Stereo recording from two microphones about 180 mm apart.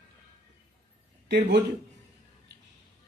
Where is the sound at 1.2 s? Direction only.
65° right (ahead or behind).